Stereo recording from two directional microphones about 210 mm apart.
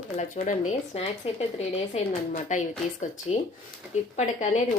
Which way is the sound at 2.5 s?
35° left (ahead or behind).